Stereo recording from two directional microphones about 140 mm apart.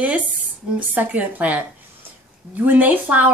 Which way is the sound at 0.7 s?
10° right (ahead or behind).